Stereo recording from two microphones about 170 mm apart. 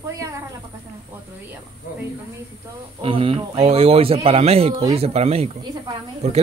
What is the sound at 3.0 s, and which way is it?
A man's voice, 30° right (ahead or behind).